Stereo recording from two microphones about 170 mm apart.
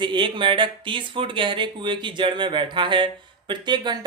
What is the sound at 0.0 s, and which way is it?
Speech, 30° right (ahead or behind).